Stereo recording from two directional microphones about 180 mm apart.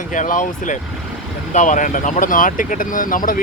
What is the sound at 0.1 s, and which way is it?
Speech, 45° left (ahead or behind).